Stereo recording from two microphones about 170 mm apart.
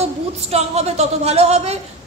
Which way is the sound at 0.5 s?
40° right (ahead or behind).